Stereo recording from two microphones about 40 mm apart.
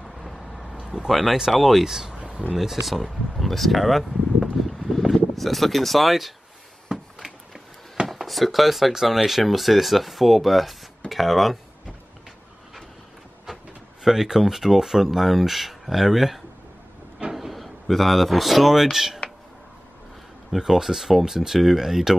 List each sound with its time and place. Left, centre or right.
0.0 s vehicle: centre
0.8 s speech: centre
2.1 s a sound: right
2.5 s speech: centre
4.6 s a sound: centre
5.1 s speech: centre
6.9 s a sound: centre
8.1 s speech: centre
14.0 s speech: centre
20.5 s speech: centre